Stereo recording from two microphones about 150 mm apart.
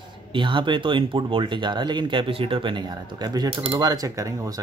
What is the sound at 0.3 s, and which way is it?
Speech, 35° right (ahead or behind).